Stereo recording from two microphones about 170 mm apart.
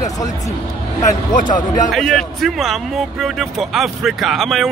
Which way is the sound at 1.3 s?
50° left (ahead or behind).